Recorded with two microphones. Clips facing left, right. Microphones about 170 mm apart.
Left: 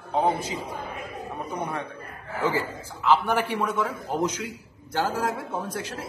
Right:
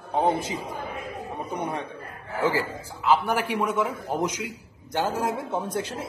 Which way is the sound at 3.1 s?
10° right (ahead or behind).